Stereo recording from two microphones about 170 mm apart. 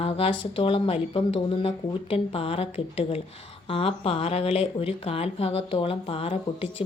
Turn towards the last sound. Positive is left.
turn(degrees=35)  # may be behind; listen again after turning